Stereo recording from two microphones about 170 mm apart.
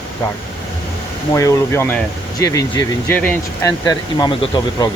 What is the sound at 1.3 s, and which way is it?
Speech, 20° left (ahead or behind).